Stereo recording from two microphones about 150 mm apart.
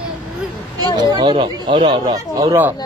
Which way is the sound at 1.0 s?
30° right (ahead or behind).